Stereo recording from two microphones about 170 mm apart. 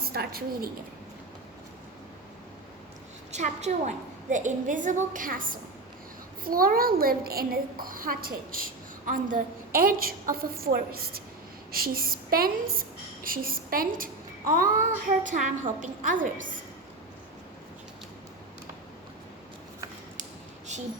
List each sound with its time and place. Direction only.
0.0 s a woman's voice: 65° right (ahead or behind)
3.3 s a woman's voice: 45° right (ahead or behind)